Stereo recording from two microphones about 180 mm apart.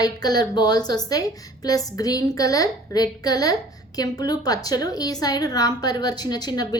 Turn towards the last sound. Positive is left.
turn(degrees=20)  # may be behind; listen again after turning